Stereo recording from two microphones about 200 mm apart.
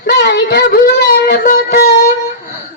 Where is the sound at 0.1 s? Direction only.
60° left (ahead or behind).